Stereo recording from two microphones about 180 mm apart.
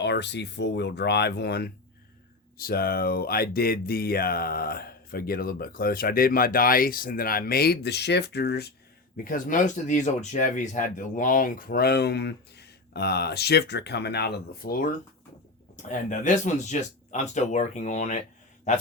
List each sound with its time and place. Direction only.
0.0 s speech: 70° left (ahead or behind)
9.2 s a man's voice: 50° left (ahead or behind)